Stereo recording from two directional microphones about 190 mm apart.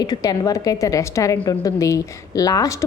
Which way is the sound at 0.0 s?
20° left (ahead or behind).